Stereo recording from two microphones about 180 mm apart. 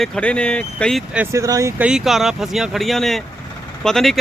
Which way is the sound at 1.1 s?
15° right (ahead or behind).